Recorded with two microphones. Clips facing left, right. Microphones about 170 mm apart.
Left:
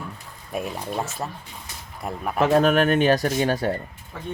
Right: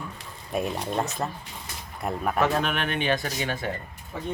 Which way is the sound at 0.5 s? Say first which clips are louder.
Right 1 dB; centre (ahead or behind).